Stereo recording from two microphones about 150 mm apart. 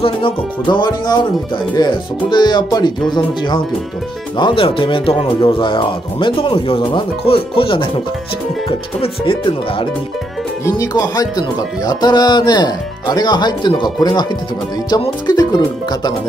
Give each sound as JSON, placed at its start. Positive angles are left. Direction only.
{"t": 0.0, "sound": "speech", "side_deg": 35}
{"t": 10.6, "sound": "speech", "side_deg": 25}